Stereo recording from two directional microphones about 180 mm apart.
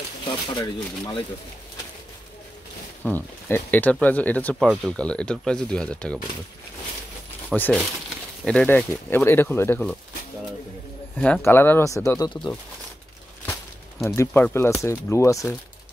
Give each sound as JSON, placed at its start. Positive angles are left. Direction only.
{"t": 0.2, "sound": "speech", "side_deg": 30}
{"t": 3.0, "sound": "speech", "side_deg": 10}
{"t": 7.4, "sound": "speech", "side_deg": 10}
{"t": 11.1, "sound": "speech", "side_deg": 5}
{"t": 14.1, "sound": "speech", "side_deg": 15}